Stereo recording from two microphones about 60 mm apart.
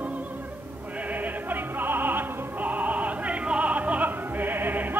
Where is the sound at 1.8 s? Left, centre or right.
Right.